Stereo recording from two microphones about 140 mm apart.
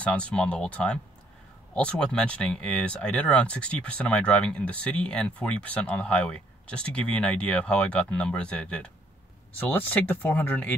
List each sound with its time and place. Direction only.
0.0 s speech: 10° left (ahead or behind)